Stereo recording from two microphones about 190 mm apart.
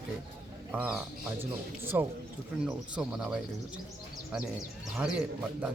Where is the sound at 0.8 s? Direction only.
10° right (ahead or behind).